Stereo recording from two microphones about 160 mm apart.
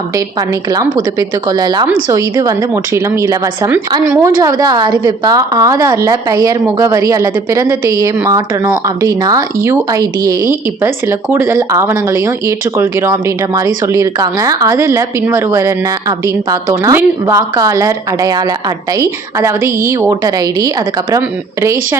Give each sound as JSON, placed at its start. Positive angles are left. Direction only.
{"t": 0.7, "sound": "a woman's voice", "side_deg": -20}